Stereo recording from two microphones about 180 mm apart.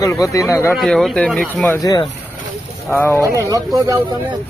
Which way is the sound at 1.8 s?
20° left (ahead or behind).